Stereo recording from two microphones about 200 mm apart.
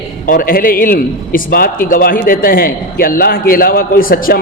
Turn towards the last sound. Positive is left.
turn(degrees=45)  # may be behind; listen again after turning